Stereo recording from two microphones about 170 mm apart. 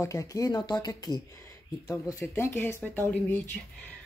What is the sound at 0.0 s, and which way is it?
Speech, 20° left (ahead or behind).